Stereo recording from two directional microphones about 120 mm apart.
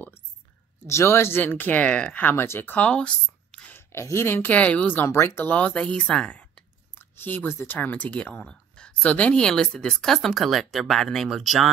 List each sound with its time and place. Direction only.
0.8 s speech: 25° left (ahead or behind)
3.7 s speech: 20° left (ahead or behind); by 11.7 s centre (ahead or behind)